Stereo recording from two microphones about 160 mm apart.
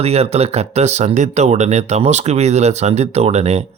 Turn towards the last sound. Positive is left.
turn(degrees=-40)  # may be behind; listen again after turning